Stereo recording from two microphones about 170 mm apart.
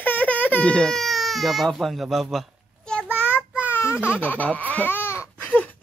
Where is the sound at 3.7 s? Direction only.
15° left (ahead or behind).